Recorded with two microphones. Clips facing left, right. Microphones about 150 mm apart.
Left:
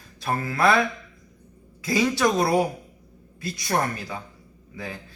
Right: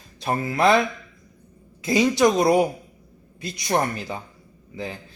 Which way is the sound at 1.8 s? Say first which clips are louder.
Right 4 dB; 20° right (ahead or behind).